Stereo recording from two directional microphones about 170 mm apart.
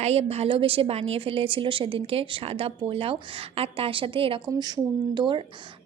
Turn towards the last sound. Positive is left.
turn(degrees=-25)  # may be behind; listen again after turning